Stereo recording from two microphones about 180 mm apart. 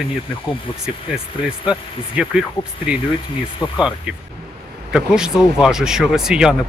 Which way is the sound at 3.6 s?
20° left (ahead or behind).